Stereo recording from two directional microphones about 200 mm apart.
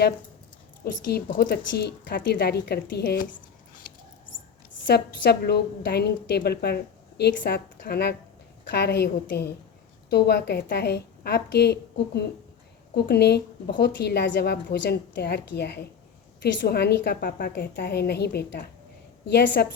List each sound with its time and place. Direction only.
0.9 s a woman's voice: 55° left (ahead or behind)
3.9 s a sound: 45° left (ahead or behind)
4.9 s a woman's voice: 55° left (ahead or behind)